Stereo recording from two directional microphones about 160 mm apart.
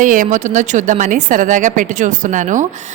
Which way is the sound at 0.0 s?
55° right (ahead or behind).